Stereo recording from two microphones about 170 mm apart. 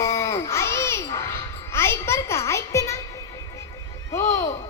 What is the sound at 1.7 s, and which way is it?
Music, 15° left (ahead or behind).